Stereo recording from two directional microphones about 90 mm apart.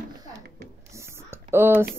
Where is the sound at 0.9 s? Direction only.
30° right (ahead or behind).